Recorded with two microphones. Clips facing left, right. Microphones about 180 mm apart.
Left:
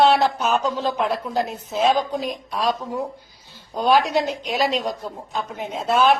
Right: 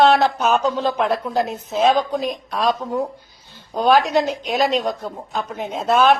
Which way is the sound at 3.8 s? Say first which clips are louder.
Right 2 dB; 50° right (ahead or behind).